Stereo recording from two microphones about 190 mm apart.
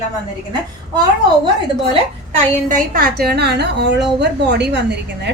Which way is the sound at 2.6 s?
45° right (ahead or behind).